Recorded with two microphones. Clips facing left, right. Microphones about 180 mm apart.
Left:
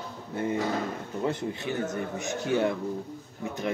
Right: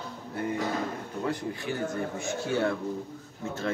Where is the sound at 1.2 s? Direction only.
25° left (ahead or behind).